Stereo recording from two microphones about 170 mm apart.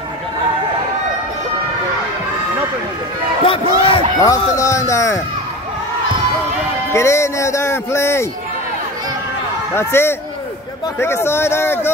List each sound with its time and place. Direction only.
3.4 s speech: 30° left (ahead or behind)
4.2 s speech: 20° left (ahead or behind)
6.9 s speech: 15° left (ahead or behind)
9.8 s speech: 15° left (ahead or behind)